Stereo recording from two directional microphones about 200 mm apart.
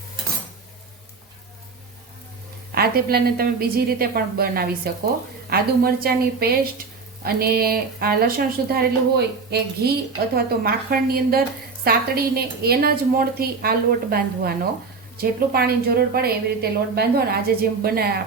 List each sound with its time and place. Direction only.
2.7 s a woman's voice: 50° right (ahead or behind)